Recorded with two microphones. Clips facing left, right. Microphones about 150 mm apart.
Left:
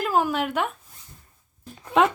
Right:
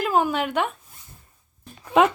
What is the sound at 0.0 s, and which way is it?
Speech, centre (ahead or behind).